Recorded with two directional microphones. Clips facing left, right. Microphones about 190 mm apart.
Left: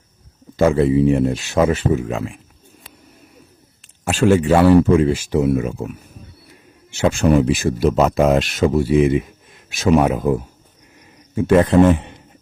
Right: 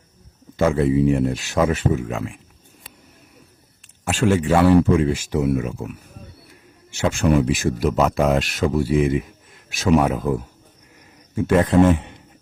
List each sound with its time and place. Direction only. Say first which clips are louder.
0.5 s speech: left 3 dB; 30° left (ahead or behind)
4.0 s speech: left 4 dB; 30° left (ahead or behind)
7.0 s speech: left 3 dB; 30° left (ahead or behind)
11.4 s speech: left 3 dB; 30° left (ahead or behind)